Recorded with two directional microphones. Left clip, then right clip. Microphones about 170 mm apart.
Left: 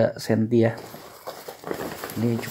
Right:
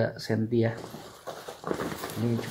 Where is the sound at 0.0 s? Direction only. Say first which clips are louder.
Left 7 dB; 45° left (ahead or behind).